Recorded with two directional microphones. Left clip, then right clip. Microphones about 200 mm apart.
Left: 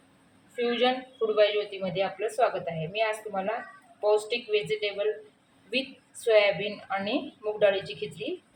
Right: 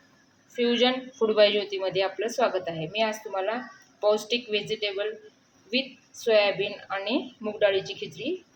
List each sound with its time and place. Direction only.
0.5 s a woman's voice: 20° right (ahead or behind)